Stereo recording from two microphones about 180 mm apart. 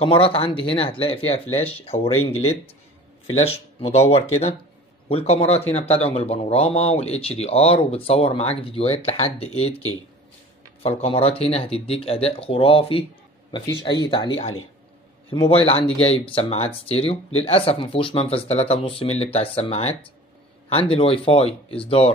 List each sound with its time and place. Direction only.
0.0 s speech: 30° left (ahead or behind)
2.1 s speech: 15° left (ahead or behind)
3.3 s speech: 35° left (ahead or behind)
14.0 s speech: 25° left (ahead or behind)